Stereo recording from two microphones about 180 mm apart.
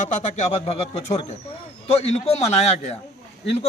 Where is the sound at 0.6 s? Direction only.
30° left (ahead or behind).